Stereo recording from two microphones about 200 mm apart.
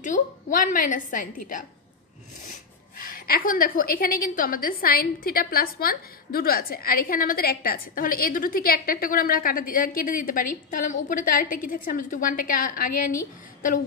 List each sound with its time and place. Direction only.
0.0 s a woman's voice: 40° left (ahead or behind)
3.0 s a woman's voice: 45° left (ahead or behind)